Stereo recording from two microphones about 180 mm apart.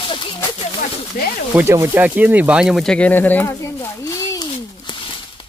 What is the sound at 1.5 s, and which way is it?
Speech, 15° right (ahead or behind).